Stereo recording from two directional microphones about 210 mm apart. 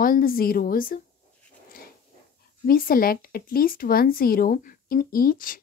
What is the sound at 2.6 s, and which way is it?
Speech, 45° left (ahead or behind).